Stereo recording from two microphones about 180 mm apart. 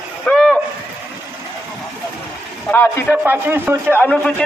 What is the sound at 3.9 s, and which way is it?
Speech, 10° left (ahead or behind).